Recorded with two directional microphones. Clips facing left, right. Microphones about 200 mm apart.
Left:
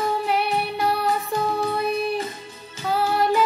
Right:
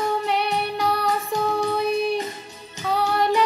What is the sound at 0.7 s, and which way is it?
Music, 5° left (ahead or behind).